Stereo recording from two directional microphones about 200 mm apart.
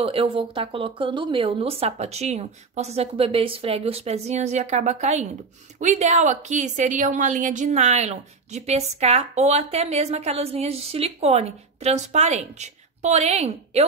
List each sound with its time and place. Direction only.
0.0 s a woman's voice: 30° right (ahead or behind)